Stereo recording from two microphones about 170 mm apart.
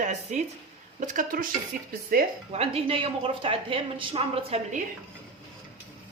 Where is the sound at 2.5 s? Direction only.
35° right (ahead or behind).